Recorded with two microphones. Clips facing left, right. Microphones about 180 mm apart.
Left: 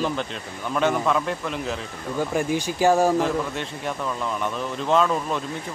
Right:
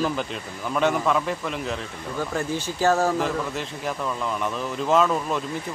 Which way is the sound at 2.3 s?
15° left (ahead or behind).